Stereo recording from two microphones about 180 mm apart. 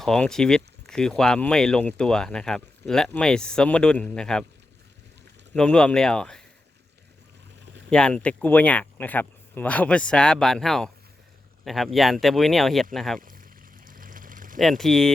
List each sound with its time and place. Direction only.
0.0 s speech: 5° left (ahead or behind)
5.5 s speech: 5° left (ahead or behind)
7.9 s speech: 5° left (ahead or behind)
13.8 s a sound: 50° right (ahead or behind)
14.6 s speech: centre (ahead or behind)